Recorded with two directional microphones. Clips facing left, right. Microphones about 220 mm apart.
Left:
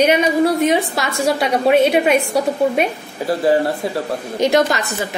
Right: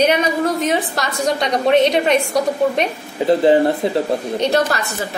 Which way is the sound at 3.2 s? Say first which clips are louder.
Right 3 dB; 20° right (ahead or behind).